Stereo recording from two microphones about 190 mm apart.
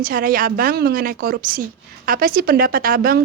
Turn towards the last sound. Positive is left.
turn(degrees=-50)  # may be behind; listen again after turning